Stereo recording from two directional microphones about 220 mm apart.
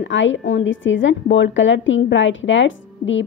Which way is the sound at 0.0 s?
60° left (ahead or behind).